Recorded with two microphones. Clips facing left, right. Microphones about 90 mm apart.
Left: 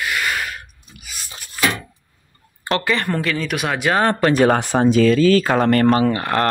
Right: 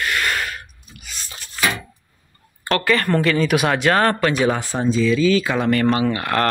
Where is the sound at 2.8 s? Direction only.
15° left (ahead or behind).